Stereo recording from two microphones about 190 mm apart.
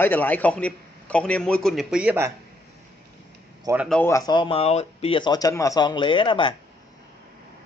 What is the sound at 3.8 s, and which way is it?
Speech, 10° left (ahead or behind).